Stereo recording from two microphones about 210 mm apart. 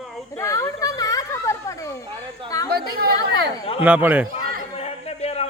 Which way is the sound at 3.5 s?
25° left (ahead or behind).